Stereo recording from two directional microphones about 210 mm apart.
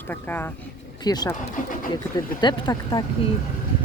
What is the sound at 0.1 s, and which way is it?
Speech, 10° left (ahead or behind).